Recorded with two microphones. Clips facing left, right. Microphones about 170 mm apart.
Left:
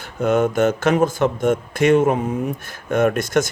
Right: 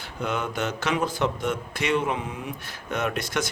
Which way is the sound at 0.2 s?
45° left (ahead or behind).